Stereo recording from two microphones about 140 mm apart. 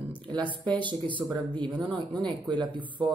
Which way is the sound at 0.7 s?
35° right (ahead or behind).